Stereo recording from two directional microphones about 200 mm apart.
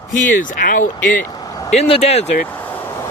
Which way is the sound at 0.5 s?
40° left (ahead or behind).